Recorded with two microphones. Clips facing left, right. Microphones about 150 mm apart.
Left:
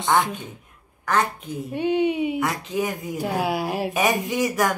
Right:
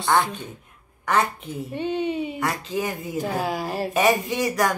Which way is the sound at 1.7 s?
10° left (ahead or behind).